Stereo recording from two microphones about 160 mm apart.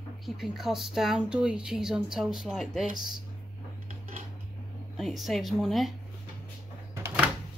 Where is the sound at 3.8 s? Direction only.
55° right (ahead or behind).